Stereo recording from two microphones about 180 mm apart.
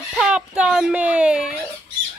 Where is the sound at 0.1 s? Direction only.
5° right (ahead or behind).